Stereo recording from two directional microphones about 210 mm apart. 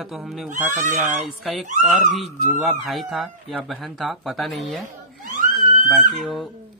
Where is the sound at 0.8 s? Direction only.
35° right (ahead or behind).